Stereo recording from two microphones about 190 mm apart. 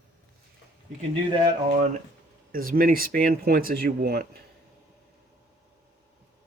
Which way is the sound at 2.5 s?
50° right (ahead or behind).